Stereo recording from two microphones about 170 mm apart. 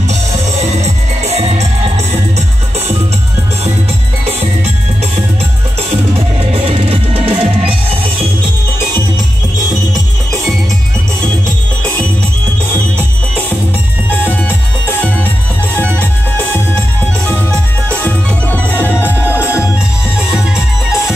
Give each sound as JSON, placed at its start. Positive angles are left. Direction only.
{"t": 0.6, "sound": "music", "side_deg": -40}
{"t": 5.9, "sound": "music", "side_deg": -35}
{"t": 17.3, "sound": "music", "side_deg": 5}